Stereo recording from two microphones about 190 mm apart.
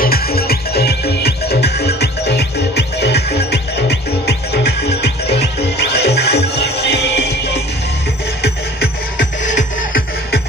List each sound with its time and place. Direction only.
0.0 s music: 55° left (ahead or behind)
9.5 s music: 40° left (ahead or behind)